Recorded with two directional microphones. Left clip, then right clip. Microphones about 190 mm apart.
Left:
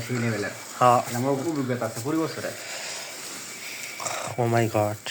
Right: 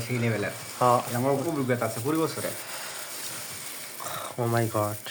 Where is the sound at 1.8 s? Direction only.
20° right (ahead or behind).